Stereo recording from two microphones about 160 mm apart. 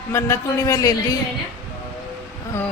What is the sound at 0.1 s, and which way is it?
Speech, 15° left (ahead or behind).